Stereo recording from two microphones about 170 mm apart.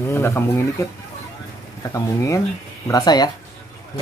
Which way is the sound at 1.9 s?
20° left (ahead or behind).